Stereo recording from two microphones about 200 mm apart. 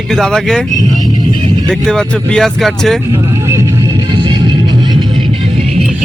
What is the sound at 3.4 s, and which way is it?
Music, 15° right (ahead or behind).